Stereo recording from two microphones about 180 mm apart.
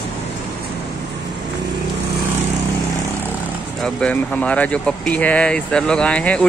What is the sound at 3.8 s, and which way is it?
Speech, 5° left (ahead or behind).